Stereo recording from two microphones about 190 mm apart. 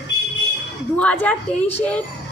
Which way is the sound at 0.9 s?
5° left (ahead or behind).